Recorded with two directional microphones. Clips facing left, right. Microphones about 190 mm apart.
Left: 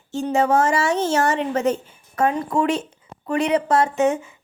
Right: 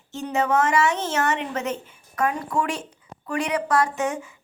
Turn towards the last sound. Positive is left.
turn(degrees=25)  # may be behind; listen again after turning